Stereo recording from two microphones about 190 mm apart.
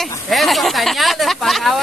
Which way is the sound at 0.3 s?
Centre (ahead or behind).